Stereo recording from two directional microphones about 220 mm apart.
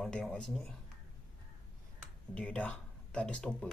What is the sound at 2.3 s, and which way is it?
Speech, 5° left (ahead or behind).